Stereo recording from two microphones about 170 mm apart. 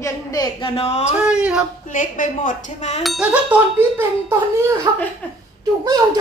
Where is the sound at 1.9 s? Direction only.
50° left (ahead or behind).